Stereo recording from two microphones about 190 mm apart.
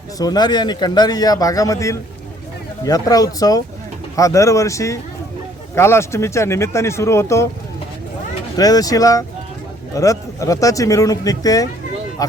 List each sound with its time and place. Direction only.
0.2 s a man's voice: 20° left (ahead or behind)
8.5 s a man's voice: 20° left (ahead or behind)